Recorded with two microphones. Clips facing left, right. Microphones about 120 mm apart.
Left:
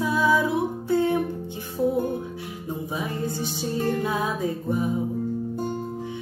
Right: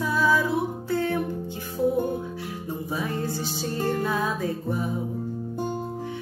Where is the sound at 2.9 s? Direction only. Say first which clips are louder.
Right 1 dB; 20° left (ahead or behind).